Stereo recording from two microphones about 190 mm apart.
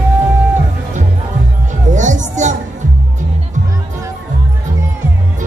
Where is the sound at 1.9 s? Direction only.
40° right (ahead or behind).